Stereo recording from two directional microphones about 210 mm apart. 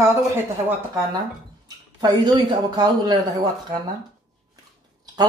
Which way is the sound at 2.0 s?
20° right (ahead or behind).